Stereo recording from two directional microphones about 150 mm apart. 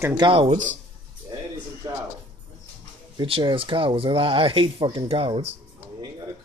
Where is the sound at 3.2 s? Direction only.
35° right (ahead or behind).